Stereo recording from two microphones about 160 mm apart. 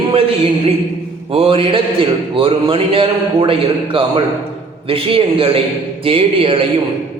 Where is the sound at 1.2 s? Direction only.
35° right (ahead or behind).